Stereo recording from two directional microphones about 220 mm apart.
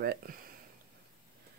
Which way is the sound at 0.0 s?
40° right (ahead or behind).